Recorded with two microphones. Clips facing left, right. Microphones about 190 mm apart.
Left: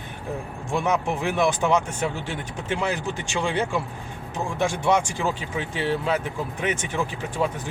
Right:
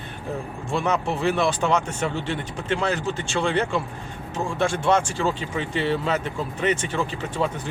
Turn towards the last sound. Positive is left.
turn(degrees=10)  # may be behind; listen again after turning